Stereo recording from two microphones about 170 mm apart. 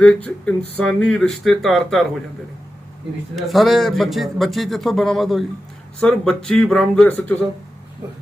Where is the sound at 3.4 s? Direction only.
Centre (ahead or behind).